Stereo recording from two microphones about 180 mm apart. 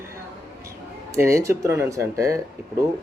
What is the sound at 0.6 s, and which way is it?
Speech, 15° right (ahead or behind).